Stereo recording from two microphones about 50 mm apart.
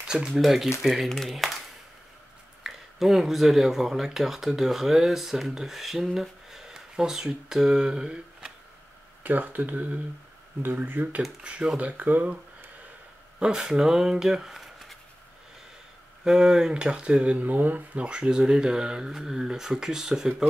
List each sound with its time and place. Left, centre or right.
0.3 s speech: centre
1.0 s speech: centre
2.6 s speech: centre
9.2 s speech: right
11.4 s speech: right
13.4 s speech: centre
16.3 s speech: centre